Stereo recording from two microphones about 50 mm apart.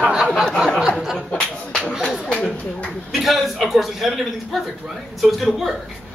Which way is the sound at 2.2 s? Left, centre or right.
Centre.